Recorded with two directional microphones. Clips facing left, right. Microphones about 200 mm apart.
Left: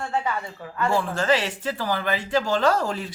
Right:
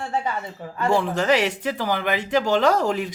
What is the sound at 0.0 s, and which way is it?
A woman's voice, 20° right (ahead or behind).